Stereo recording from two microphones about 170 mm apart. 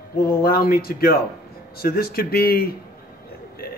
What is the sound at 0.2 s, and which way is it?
Speech, 65° left (ahead or behind).